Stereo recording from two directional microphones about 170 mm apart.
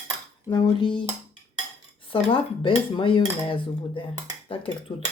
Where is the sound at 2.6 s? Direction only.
30° left (ahead or behind).